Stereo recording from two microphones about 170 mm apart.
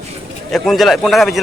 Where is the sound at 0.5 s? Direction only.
Centre (ahead or behind).